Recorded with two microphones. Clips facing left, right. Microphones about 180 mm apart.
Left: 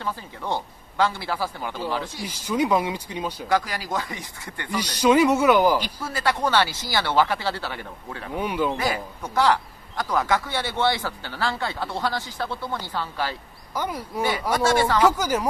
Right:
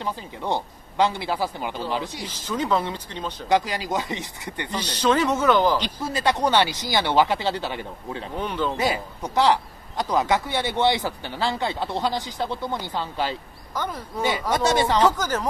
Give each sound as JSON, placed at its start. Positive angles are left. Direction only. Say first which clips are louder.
{"t": 0.0, "sound": "a man's voice", "louder": "right 2 dB", "side_deg": -20}
{"t": 2.2, "sound": "speech", "louder": "left 7 dB", "side_deg": 10}
{"t": 3.4, "sound": "a man's voice", "louder": "right 3 dB", "side_deg": -20}
{"t": 4.9, "sound": "speech", "louder": "left 3 dB", "side_deg": 10}
{"t": 6.0, "sound": "a man's voice", "louder": "right 3 dB", "side_deg": -20}
{"t": 8.4, "sound": "speech", "louder": "left 2 dB", "side_deg": 10}
{"t": 8.7, "sound": "a man's voice", "louder": "right 2 dB", "side_deg": -20}
{"t": 13.7, "sound": "speech", "louder": "left 1 dB", "side_deg": 10}
{"t": 14.5, "sound": "a man's voice", "louder": "even", "side_deg": -20}
{"t": 15.0, "sound": "speech", "louder": "left 1 dB", "side_deg": 10}